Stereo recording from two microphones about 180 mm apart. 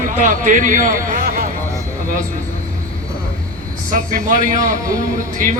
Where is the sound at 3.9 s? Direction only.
45° right (ahead or behind).